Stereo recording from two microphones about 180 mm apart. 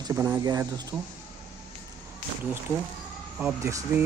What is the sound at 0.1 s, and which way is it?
Speech, 15° right (ahead or behind).